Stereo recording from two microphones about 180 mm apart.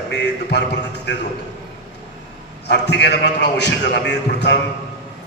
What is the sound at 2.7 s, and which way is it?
A man's voice, 70° left (ahead or behind).